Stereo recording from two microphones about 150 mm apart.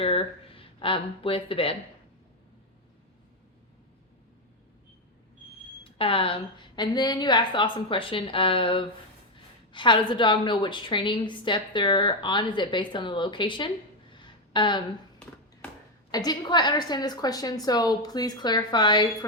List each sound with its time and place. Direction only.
0.0 s speech: 40° left (ahead or behind)
5.8 s a woman's voice: 35° left (ahead or behind)
14.1 s a sound: 30° left (ahead or behind)
16.1 s a woman's voice: 30° left (ahead or behind)